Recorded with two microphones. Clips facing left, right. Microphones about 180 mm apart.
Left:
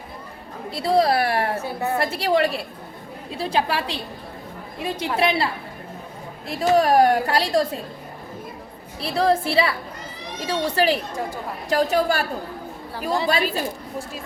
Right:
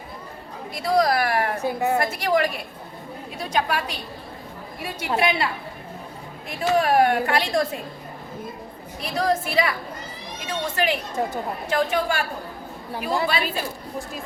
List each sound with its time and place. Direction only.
0.7 s a woman's voice: 30° left (ahead or behind)
1.5 s a woman's voice: 15° right (ahead or behind)
2.0 s a woman's voice: 30° left (ahead or behind)
6.5 s a woman's voice: 35° left (ahead or behind)
9.0 s a woman's voice: 30° left (ahead or behind)